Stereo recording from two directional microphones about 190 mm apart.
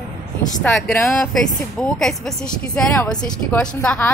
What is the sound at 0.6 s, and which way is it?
A woman's voice, 10° left (ahead or behind).